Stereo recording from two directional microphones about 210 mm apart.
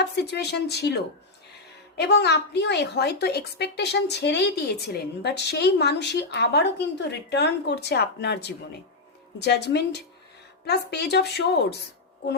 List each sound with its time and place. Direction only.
0.0 s a woman's voice: 50° left (ahead or behind)
2.0 s a woman's voice: 55° left (ahead or behind)